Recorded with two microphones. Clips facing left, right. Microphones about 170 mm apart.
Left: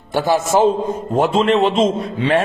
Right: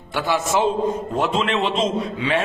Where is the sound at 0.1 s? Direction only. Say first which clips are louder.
Left 5 dB; 45° left (ahead or behind).